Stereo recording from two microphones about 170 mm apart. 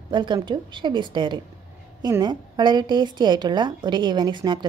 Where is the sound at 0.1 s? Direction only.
25° right (ahead or behind).